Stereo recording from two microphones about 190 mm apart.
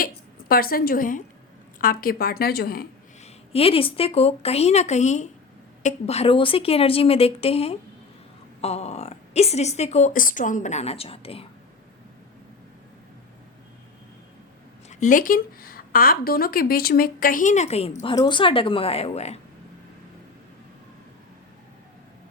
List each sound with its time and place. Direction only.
0.0 s a woman's voice: 50° left (ahead or behind)
3.5 s speech: 30° left (ahead or behind)
14.8 s speech: 40° left (ahead or behind)